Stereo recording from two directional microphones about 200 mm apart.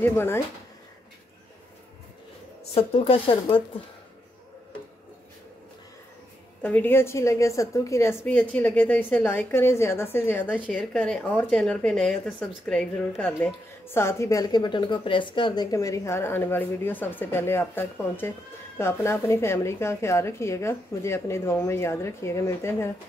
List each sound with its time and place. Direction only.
0.0 s a woman's voice: 10° left (ahead or behind)
2.7 s speech: 30° left (ahead or behind)
6.6 s a woman's voice: 10° left (ahead or behind)